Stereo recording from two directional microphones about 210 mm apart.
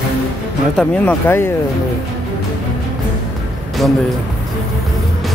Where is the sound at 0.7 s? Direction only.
5° left (ahead or behind).